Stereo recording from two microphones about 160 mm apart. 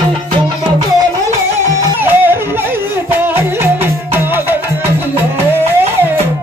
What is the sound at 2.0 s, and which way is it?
Music, 15° right (ahead or behind).